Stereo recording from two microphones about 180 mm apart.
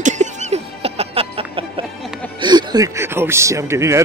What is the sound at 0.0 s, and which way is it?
Music, 40° right (ahead or behind).